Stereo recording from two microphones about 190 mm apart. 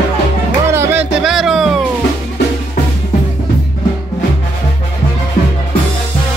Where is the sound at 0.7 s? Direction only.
10° right (ahead or behind).